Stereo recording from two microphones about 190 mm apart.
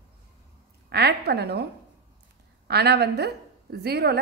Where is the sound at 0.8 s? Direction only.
60° right (ahead or behind).